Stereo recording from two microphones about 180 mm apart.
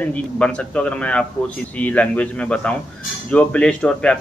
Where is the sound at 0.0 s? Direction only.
5° left (ahead or behind).